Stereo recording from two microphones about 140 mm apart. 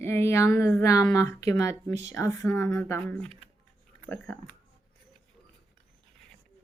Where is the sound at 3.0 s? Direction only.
5° left (ahead or behind).